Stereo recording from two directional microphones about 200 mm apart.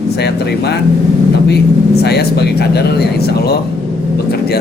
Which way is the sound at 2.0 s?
55° left (ahead or behind).